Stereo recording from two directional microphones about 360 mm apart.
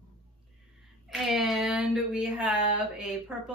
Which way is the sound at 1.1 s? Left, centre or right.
Centre.